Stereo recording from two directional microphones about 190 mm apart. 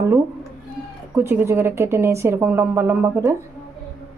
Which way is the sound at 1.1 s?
10° right (ahead or behind).